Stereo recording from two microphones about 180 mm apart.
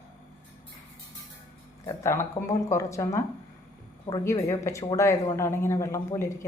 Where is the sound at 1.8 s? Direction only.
15° left (ahead or behind).